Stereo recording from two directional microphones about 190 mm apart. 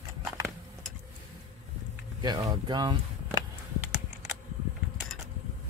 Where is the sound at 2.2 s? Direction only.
20° right (ahead or behind).